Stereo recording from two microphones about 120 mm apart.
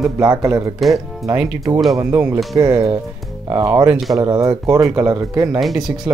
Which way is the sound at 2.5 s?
35° right (ahead or behind).